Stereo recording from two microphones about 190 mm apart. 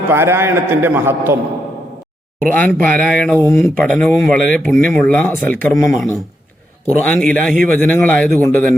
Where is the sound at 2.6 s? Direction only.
10° left (ahead or behind).